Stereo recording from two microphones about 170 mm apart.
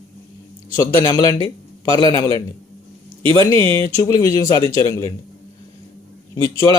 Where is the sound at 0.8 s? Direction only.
20° left (ahead or behind).